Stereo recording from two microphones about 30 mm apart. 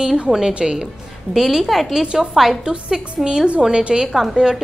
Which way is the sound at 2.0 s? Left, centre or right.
Right.